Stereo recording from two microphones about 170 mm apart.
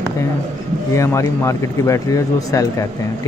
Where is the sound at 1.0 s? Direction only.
15° left (ahead or behind).